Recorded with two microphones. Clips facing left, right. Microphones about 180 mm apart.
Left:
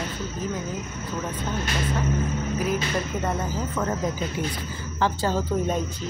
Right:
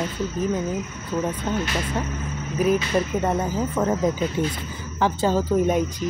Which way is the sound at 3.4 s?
20° right (ahead or behind).